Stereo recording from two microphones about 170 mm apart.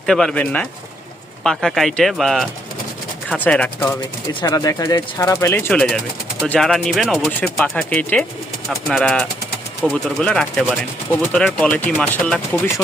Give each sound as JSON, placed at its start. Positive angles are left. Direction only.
{"t": 0.0, "sound": "speech", "side_deg": 5}
{"t": 4.4, "sound": "speech", "side_deg": 20}
{"t": 5.7, "sound": "speech", "side_deg": 0}